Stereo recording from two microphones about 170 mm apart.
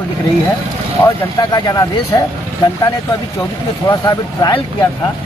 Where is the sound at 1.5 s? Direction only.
25° left (ahead or behind).